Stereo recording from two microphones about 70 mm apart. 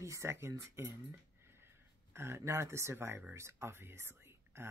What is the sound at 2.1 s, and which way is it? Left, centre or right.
Speech, right.